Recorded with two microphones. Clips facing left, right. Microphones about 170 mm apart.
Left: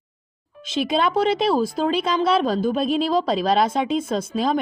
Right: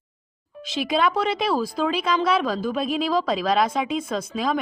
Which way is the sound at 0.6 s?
25° left (ahead or behind).